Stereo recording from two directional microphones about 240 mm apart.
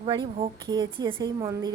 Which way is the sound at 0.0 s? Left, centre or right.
Right.